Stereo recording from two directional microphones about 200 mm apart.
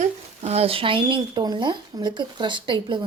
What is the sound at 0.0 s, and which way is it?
A woman's voice, 30° right (ahead or behind).